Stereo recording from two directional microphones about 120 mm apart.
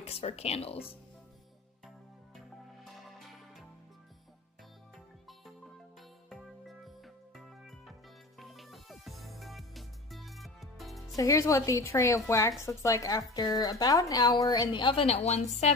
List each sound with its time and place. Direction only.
0.0 s speech: 55° left (ahead or behind)
2.8 s music: centre (ahead or behind)
6.2 s music: centre (ahead or behind)
11.1 s a woman's voice: 25° left (ahead or behind); by 15.7 s 70° left (ahead or behind)